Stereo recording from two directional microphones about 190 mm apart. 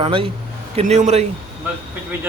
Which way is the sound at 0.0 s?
30° right (ahead or behind).